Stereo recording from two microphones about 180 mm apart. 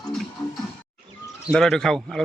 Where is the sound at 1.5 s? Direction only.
Centre (ahead or behind).